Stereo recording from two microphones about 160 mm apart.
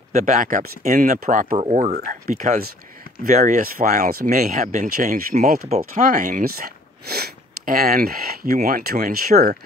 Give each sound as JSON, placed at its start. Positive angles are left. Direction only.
{"t": 0.1, "sound": "speech", "side_deg": -50}
{"t": 1.6, "sound": "speech", "side_deg": -45}
{"t": 2.0, "sound": "speech", "side_deg": -60}